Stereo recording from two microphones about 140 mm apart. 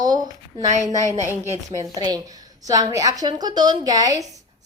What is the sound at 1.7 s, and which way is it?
Speech, 35° right (ahead or behind).